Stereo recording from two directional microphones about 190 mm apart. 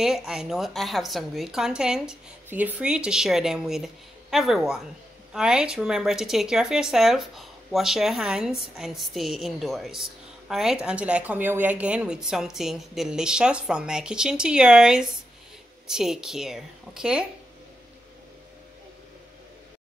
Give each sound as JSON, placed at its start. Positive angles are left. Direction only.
{"t": 0.0, "sound": "a woman's voice", "side_deg": -5}